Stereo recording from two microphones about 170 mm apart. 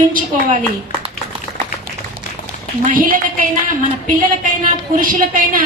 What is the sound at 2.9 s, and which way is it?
Speech, 55° right (ahead or behind).